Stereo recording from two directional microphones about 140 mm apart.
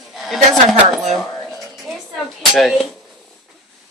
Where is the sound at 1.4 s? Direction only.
Centre (ahead or behind).